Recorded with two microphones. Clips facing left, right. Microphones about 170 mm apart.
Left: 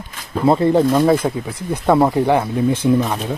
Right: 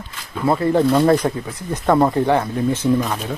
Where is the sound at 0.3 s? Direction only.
25° left (ahead or behind).